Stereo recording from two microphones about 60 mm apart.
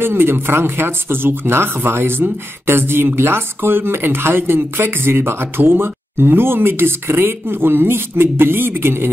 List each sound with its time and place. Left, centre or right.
0.0 s speech: right